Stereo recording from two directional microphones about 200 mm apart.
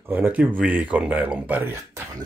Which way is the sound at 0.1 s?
10° right (ahead or behind).